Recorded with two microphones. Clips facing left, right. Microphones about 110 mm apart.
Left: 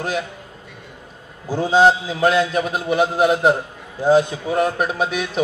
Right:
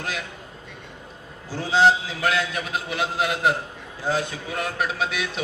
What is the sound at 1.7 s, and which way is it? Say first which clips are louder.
Speech: left 4 dB; 45° left (ahead or behind).